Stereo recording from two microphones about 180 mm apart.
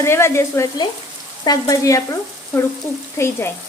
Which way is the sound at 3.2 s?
15° left (ahead or behind).